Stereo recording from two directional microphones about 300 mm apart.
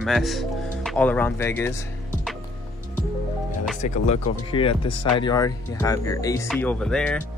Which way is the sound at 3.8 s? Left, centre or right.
Left.